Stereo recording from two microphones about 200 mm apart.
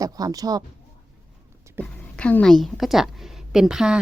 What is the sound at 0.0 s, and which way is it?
Speech, 20° right (ahead or behind).